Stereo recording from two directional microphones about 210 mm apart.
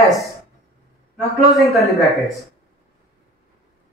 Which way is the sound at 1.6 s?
Centre (ahead or behind).